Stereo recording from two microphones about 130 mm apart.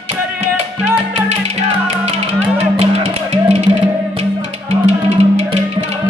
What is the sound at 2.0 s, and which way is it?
Music, 50° right (ahead or behind).